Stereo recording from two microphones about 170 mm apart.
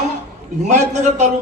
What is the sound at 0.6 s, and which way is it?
Speech, 45° right (ahead or behind).